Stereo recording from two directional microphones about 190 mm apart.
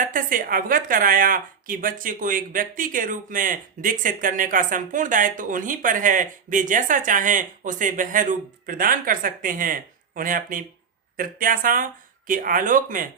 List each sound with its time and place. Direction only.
0.0 s a woman's voice: 45° right (ahead or behind)